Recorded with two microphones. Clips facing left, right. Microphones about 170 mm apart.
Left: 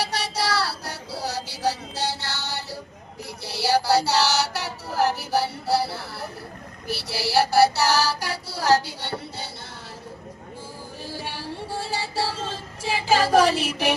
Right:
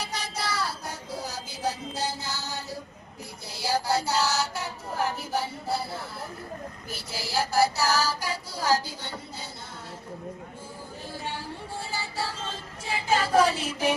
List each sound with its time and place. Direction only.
0.0 s music: 75° left (ahead or behind)
3.4 s child singing: 75° left (ahead or behind)
11.0 s music: 85° left